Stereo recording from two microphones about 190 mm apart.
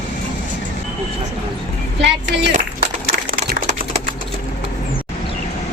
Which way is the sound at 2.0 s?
70° right (ahead or behind).